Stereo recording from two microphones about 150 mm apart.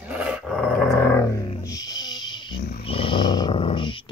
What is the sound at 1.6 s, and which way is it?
Speech, 25° left (ahead or behind).